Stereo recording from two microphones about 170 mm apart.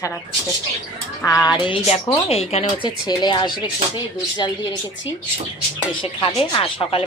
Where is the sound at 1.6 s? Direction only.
35° left (ahead or behind).